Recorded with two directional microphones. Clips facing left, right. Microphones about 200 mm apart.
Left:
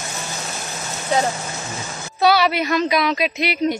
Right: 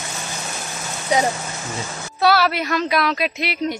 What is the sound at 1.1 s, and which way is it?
Speech, 15° right (ahead or behind).